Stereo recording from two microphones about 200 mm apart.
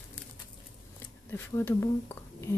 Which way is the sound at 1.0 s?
10° left (ahead or behind).